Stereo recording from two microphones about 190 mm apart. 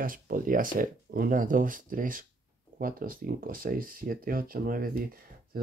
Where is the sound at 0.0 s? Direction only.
45° right (ahead or behind).